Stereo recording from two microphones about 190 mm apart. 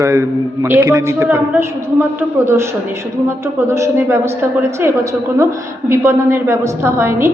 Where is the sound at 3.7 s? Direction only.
15° right (ahead or behind).